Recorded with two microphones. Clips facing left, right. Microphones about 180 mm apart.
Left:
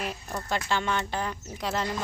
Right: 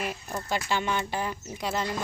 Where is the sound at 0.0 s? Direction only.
5° right (ahead or behind).